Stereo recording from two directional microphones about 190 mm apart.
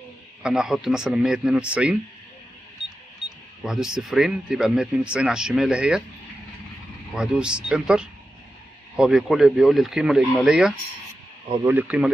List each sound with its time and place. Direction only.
0.4 s speech: 5° right (ahead or behind)
3.3 s speech: 5° right (ahead or behind)
7.2 s speech: 5° right (ahead or behind)